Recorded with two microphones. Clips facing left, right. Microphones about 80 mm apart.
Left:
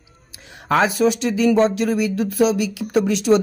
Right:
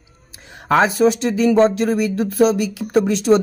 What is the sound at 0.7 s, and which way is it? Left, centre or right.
Speech, right.